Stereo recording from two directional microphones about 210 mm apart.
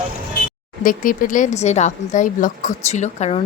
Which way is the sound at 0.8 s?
40° left (ahead or behind).